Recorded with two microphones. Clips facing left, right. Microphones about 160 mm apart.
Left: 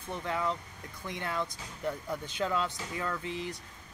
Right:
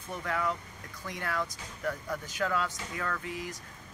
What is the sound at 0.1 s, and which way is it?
Speech, 25° left (ahead or behind).